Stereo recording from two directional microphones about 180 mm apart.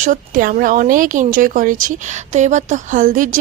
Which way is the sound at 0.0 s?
50° right (ahead or behind).